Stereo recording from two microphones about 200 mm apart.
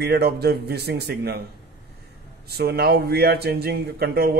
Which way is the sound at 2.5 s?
50° right (ahead or behind).